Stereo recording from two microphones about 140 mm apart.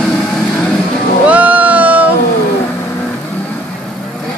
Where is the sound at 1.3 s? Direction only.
10° right (ahead or behind).